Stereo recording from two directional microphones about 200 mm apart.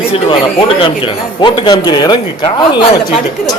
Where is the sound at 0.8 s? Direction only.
25° left (ahead or behind).